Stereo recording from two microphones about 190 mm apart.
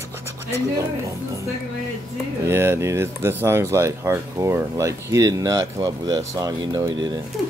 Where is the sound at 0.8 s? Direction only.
15° right (ahead or behind).